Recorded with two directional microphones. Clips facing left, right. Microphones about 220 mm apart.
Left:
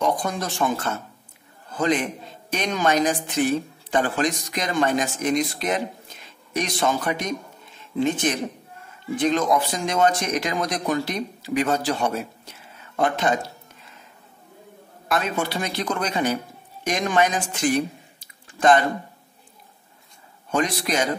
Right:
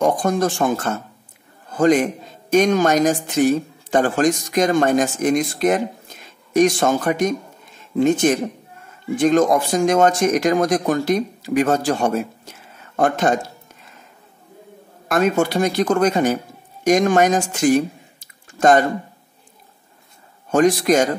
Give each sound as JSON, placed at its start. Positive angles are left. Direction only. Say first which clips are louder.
{"t": 0.0, "sound": "speech", "louder": "right 7 dB", "side_deg": -50}
{"t": 15.0, "sound": "speech", "louder": "right 7 dB", "side_deg": -45}
{"t": 20.5, "sound": "speech", "louder": "right 9 dB", "side_deg": -45}